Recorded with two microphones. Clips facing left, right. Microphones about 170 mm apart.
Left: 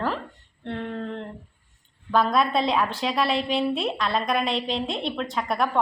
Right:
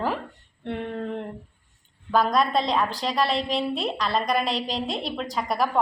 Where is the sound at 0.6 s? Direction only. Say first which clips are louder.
Right 1 dB; 15° right (ahead or behind).